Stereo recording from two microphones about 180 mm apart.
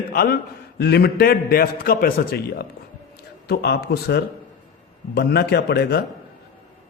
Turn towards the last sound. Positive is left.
turn(degrees=65)  # may be behind; listen again after turning